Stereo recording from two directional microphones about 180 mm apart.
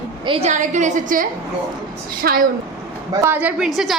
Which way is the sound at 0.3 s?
35° right (ahead or behind).